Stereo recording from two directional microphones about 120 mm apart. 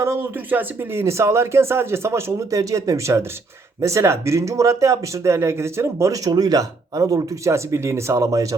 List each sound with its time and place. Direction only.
0.0 s speech: 20° right (ahead or behind)